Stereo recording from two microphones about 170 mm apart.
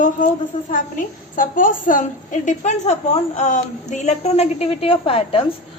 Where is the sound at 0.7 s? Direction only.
55° left (ahead or behind).